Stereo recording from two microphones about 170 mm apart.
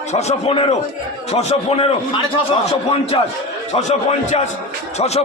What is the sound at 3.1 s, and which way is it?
Speech, 30° left (ahead or behind).